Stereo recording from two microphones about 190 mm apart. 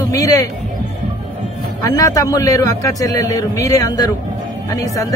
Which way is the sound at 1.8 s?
20° left (ahead or behind).